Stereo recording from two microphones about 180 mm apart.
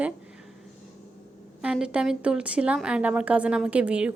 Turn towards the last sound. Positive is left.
turn(degrees=-5)  # may be behind; listen again after turning